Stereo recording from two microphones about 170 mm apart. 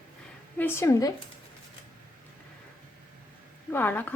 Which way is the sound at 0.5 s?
15° left (ahead or behind).